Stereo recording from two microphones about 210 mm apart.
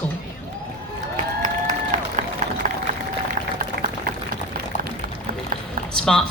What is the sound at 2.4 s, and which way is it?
Run, 35° right (ahead or behind).